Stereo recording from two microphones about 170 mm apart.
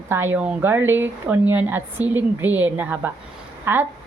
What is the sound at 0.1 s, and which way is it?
A woman's voice, 10° right (ahead or behind).